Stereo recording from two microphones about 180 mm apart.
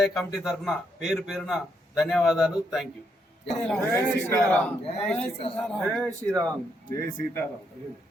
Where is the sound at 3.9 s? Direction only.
10° left (ahead or behind).